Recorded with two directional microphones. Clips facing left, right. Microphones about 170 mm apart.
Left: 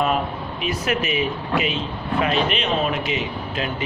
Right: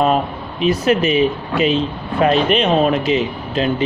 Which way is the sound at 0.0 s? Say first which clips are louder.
Right 5 dB; 30° right (ahead or behind).